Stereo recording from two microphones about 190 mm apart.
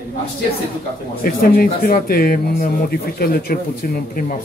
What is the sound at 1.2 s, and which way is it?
Speech, 50° left (ahead or behind).